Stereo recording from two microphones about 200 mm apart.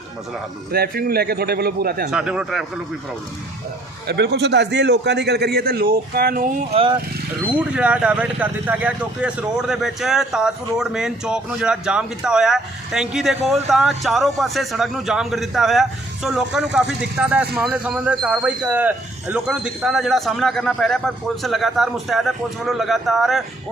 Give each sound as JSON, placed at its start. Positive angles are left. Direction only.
{"t": 0.7, "sound": "a man's voice", "side_deg": -50}
{"t": 2.0, "sound": "speech", "side_deg": -5}
{"t": 4.0, "sound": "a man's voice", "side_deg": -55}
{"t": 6.7, "sound": "speech", "side_deg": -30}
{"t": 7.4, "sound": "speech", "side_deg": -5}